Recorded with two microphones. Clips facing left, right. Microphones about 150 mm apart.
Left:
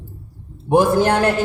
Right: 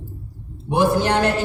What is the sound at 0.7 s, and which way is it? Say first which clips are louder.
Speech: left 4 dB; 50° left (ahead or behind).